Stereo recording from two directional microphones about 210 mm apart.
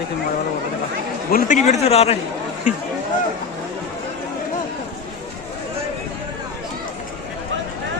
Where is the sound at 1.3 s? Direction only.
40° left (ahead or behind).